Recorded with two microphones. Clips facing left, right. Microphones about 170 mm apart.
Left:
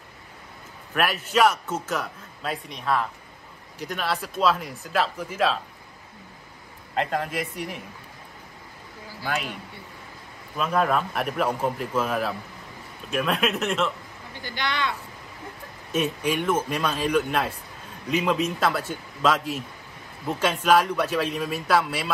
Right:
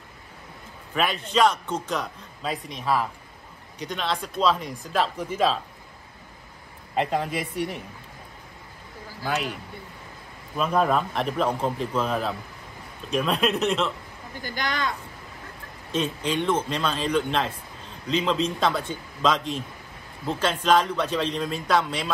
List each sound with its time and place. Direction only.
0.9 s a man's voice: 5° left (ahead or behind)
7.0 s a man's voice: centre (ahead or behind)
10.6 s a man's voice: centre (ahead or behind)
14.4 s speech: 45° right (ahead or behind)
15.9 s speech: 10° left (ahead or behind)